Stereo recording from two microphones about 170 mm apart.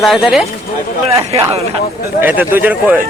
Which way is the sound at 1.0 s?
35° right (ahead or behind).